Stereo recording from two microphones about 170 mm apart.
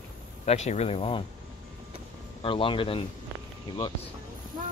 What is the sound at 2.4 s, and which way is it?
Speech, 30° left (ahead or behind).